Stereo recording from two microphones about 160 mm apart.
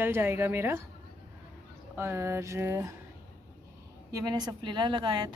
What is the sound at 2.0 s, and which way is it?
Speech, 15° right (ahead or behind).